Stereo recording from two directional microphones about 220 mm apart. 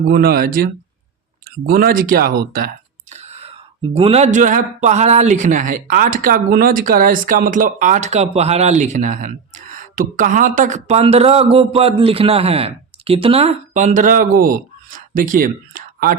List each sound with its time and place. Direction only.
0.1 s speech: 40° right (ahead or behind)
1.5 s a sound: 40° right (ahead or behind)
3.9 s a man's voice: 25° right (ahead or behind)